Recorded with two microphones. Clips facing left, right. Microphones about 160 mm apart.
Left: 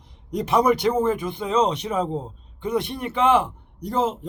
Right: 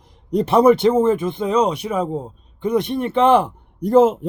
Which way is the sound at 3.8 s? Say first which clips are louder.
Right 10 dB; 50° right (ahead or behind).